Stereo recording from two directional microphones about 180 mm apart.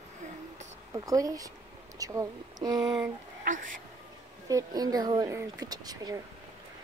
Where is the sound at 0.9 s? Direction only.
20° right (ahead or behind).